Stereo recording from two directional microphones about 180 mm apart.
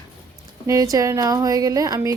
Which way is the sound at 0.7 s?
20° right (ahead or behind).